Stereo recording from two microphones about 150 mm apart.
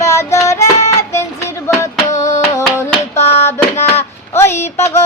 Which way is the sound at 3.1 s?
45° left (ahead or behind).